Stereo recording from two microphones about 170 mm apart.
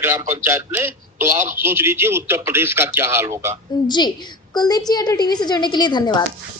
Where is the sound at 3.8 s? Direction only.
25° left (ahead or behind).